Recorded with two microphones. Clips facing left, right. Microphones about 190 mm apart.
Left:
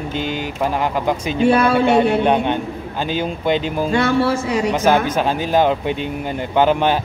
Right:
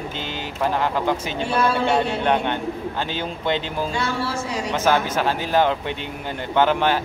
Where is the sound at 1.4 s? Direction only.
60° left (ahead or behind).